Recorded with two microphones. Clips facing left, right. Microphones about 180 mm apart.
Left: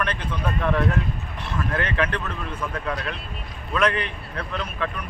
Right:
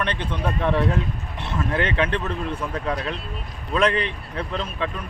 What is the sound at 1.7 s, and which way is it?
Speech, 25° right (ahead or behind).